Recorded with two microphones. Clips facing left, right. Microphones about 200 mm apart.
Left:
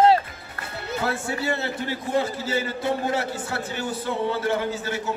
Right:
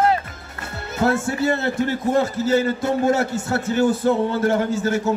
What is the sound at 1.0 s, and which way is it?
A man's voice, 45° right (ahead or behind).